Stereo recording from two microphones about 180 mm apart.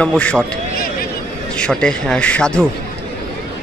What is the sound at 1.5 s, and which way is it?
A man's voice, 5° left (ahead or behind).